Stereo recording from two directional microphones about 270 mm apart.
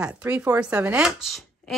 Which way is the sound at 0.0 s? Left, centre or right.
Centre.